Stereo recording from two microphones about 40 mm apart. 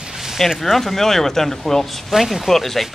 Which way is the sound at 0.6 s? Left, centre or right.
Centre.